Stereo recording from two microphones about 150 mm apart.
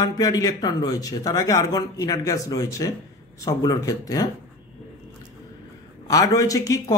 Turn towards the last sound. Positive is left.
turn(degrees=25)  # may be behind; listen again after turning